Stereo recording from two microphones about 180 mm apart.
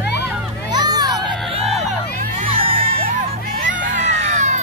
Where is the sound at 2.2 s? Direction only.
50° right (ahead or behind).